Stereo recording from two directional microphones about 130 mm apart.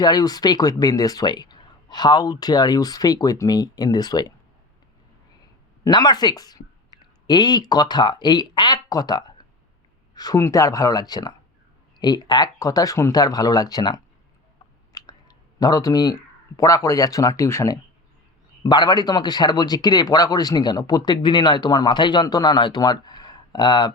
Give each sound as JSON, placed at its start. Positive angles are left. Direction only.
{"t": 0.0, "sound": "speech", "side_deg": 30}
{"t": 5.9, "sound": "speech", "side_deg": 30}
{"t": 18.6, "sound": "speech", "side_deg": 35}